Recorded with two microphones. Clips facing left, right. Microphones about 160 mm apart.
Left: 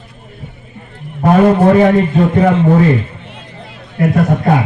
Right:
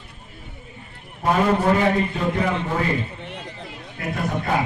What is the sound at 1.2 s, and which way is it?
A man's voice, 55° left (ahead or behind).